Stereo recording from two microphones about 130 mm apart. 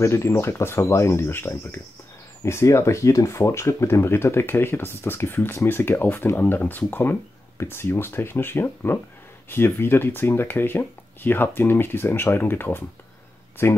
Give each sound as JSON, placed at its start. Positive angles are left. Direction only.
{"t": 0.0, "sound": "speech", "side_deg": 20}